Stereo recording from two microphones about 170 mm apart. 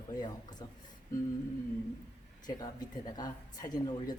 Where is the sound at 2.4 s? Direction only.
25° left (ahead or behind).